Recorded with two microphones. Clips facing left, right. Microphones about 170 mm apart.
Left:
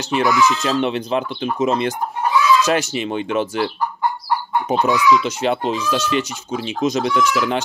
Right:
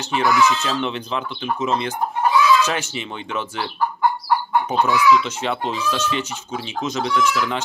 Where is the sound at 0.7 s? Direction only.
55° left (ahead or behind).